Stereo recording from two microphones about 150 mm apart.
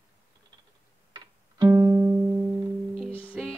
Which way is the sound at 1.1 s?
25° right (ahead or behind).